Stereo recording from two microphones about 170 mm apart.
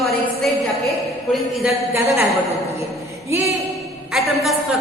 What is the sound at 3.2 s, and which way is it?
Speech, 15° right (ahead or behind).